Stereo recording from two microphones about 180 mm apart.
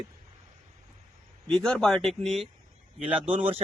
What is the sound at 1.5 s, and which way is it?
Speech, 5° left (ahead or behind).